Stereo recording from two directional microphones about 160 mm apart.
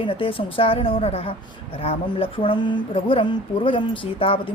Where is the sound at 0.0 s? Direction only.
35° left (ahead or behind).